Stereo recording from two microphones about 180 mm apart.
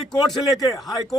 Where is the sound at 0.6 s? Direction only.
20° left (ahead or behind).